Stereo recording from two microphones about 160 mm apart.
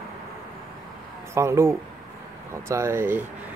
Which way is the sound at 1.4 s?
15° right (ahead or behind).